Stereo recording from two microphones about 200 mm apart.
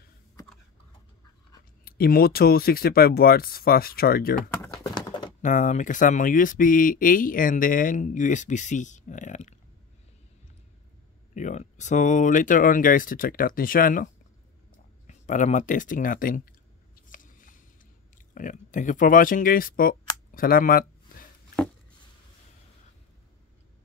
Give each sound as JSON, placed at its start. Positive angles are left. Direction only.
{"t": 1.9, "sound": "speech", "side_deg": 50}
{"t": 4.8, "sound": "bird", "side_deg": 20}
{"t": 5.4, "sound": "speech", "side_deg": 40}
{"t": 11.3, "sound": "speech", "side_deg": 35}
{"t": 17.1, "sound": "a sound", "side_deg": 40}
{"t": 18.1, "sound": "speech", "side_deg": 40}